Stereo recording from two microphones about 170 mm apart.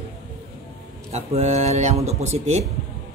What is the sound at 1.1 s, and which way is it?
Speech, 40° right (ahead or behind).